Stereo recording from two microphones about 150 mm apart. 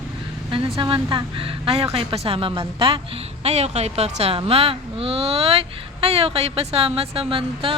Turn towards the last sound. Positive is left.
turn(degrees=-35)  # may be behind; listen again after turning